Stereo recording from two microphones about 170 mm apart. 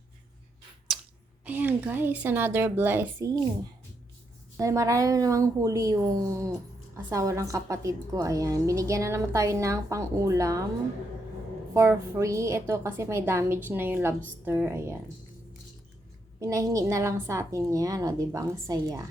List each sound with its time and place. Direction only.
0.9 s a sound: centre (ahead or behind)
1.5 s a woman's voice: 10° right (ahead or behind)
4.5 s a woman's voice: 15° right (ahead or behind)
11.7 s a woman's voice: 15° right (ahead or behind)
16.4 s a woman's voice: 20° right (ahead or behind)